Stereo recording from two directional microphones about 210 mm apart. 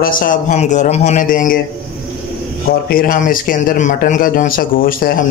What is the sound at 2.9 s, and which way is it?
A man's voice, 40° left (ahead or behind).